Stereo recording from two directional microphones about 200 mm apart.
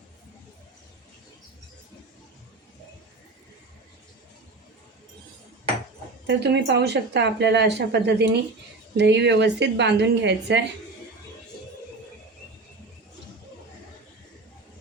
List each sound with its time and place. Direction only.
6.2 s speech: 60° right (ahead or behind)